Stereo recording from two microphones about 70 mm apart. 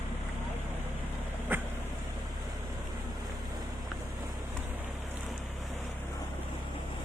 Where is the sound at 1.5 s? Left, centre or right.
Right.